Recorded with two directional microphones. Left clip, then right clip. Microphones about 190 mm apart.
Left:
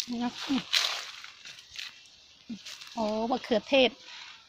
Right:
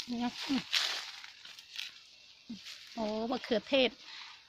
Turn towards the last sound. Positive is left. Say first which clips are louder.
# left 5 dB
turn(degrees=-10)  # may be behind; listen again after turning